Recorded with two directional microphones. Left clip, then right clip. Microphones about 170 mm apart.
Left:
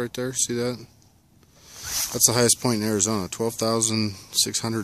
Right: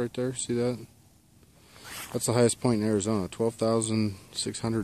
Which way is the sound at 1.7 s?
5° left (ahead or behind).